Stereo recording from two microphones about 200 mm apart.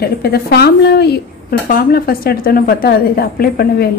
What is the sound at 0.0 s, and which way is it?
A woman's voice, 50° left (ahead or behind).